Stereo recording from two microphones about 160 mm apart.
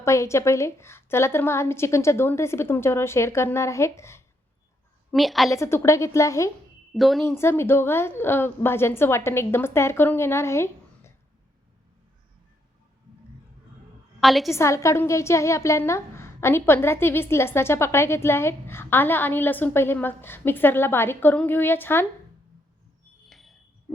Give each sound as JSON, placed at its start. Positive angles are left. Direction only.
{"t": 0.0, "sound": "a woman's voice", "side_deg": 20}
{"t": 5.1, "sound": "a woman's voice", "side_deg": 0}
{"t": 5.5, "sound": "a woman's voice", "side_deg": 15}
{"t": 6.9, "sound": "a woman's voice", "side_deg": 0}
{"t": 7.3, "sound": "a woman's voice", "side_deg": 15}
{"t": 14.2, "sound": "a woman's voice", "side_deg": 0}
{"t": 14.5, "sound": "a woman's voice", "side_deg": 15}
{"t": 23.3, "sound": "a sound", "side_deg": 0}